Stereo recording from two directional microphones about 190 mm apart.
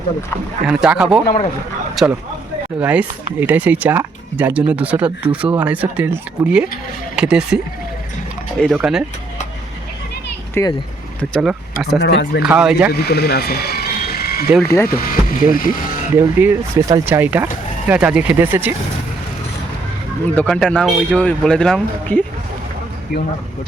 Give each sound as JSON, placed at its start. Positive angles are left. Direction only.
{"t": 0.7, "sound": "speech", "side_deg": -5}
{"t": 10.5, "sound": "speech", "side_deg": 20}
{"t": 11.2, "sound": "speech", "side_deg": 0}
{"t": 12.0, "sound": "speech", "side_deg": 65}
{"t": 12.4, "sound": "speech", "side_deg": -5}
{"t": 12.9, "sound": "ratchet", "side_deg": 55}
{"t": 14.6, "sound": "speech", "side_deg": 15}
{"t": 14.8, "sound": "speech", "side_deg": 50}
{"t": 16.1, "sound": "speech", "side_deg": -10}
{"t": 20.3, "sound": "speech", "side_deg": 5}